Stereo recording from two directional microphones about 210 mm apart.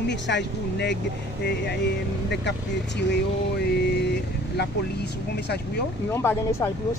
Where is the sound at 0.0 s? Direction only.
55° left (ahead or behind).